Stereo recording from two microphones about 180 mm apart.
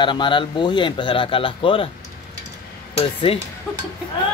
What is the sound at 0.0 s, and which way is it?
Speech, 25° left (ahead or behind).